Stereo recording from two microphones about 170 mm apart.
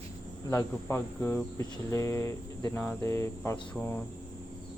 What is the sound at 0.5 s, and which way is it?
Speech, 15° left (ahead or behind).